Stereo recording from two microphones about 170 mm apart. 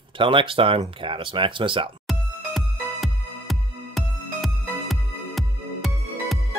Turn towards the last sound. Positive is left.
turn(degrees=0)  # may be behind; listen again after turning